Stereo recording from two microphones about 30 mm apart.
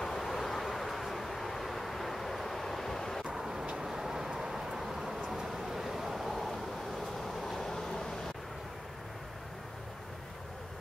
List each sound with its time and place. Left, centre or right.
0.0 s vehicle: centre
3.3 s vehicle: centre
7.2 s train: centre
7.7 s vehicle: centre